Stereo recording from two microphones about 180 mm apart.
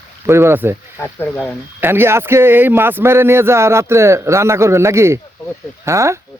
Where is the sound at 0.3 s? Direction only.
15° right (ahead or behind).